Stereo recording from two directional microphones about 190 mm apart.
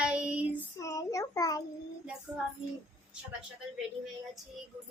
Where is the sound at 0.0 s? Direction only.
5° right (ahead or behind).